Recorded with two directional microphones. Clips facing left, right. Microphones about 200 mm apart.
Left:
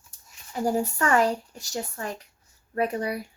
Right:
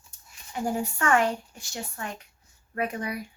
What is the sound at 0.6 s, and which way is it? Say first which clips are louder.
A woman's voice: left 2 dB; 35° left (ahead or behind).